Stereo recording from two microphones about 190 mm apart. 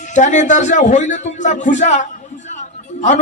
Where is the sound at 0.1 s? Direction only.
40° left (ahead or behind).